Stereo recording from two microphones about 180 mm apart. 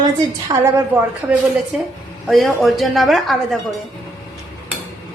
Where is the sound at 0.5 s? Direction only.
20° right (ahead or behind).